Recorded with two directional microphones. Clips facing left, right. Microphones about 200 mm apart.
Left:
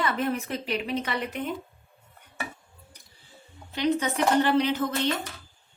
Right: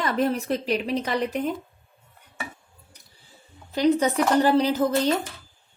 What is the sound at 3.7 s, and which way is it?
A woman's voice, 40° right (ahead or behind).